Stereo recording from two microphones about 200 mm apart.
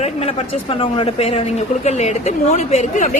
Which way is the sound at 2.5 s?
35° left (ahead or behind).